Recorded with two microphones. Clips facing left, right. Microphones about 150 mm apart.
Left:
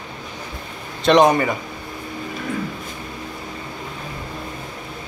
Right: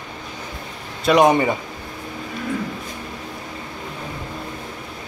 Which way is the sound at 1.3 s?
20° right (ahead or behind).